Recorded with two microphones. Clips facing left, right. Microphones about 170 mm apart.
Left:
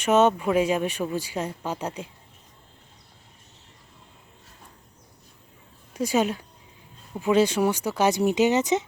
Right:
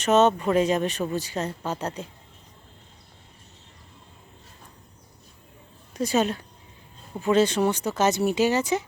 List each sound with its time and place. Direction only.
0.0 s speech: 10° left (ahead or behind)
5.9 s speech: 10° left (ahead or behind)